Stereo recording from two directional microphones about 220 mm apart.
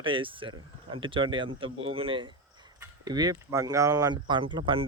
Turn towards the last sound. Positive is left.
turn(degrees=-20)  # may be behind; listen again after turning